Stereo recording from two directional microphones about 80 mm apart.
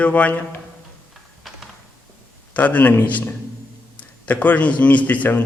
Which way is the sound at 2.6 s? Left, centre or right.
Centre.